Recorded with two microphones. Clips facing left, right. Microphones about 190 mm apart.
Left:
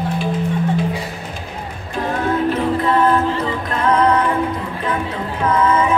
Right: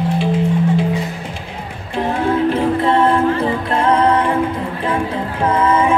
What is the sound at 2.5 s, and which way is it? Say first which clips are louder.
Music: right 2 dB; 30° right (ahead or behind).